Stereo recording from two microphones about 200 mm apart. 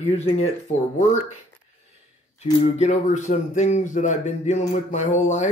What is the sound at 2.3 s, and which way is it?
Speech, 35° left (ahead or behind).